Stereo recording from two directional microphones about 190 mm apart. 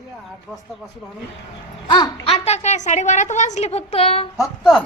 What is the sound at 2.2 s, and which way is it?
A woman's voice, 35° left (ahead or behind).